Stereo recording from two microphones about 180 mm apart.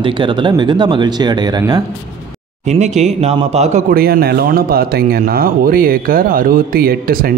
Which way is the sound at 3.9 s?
55° right (ahead or behind).